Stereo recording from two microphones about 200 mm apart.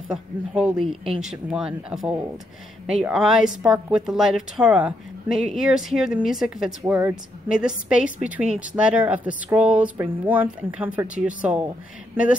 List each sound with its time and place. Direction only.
0.1 s a woman's voice: 5° right (ahead or behind)